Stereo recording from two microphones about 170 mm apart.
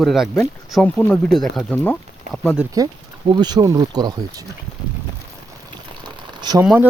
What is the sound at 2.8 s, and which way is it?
Speech, 20° right (ahead or behind).